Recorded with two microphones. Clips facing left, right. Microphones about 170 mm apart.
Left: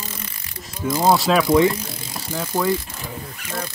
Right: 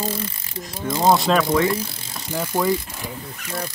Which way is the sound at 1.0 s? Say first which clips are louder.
Even; 5° left (ahead or behind).